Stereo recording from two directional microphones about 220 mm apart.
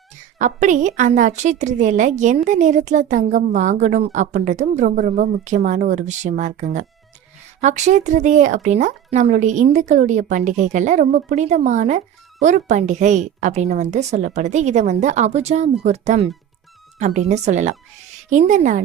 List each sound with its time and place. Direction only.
0.3 s speech: 35° right (ahead or behind)